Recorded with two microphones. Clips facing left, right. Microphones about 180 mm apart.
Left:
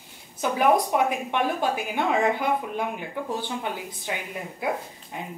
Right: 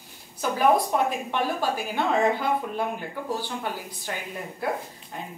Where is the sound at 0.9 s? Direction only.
10° left (ahead or behind).